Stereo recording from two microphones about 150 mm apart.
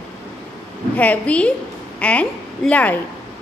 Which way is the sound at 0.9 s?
10° left (ahead or behind).